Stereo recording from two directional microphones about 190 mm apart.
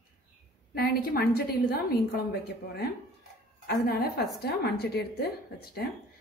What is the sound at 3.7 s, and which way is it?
A woman's voice, 55° left (ahead or behind).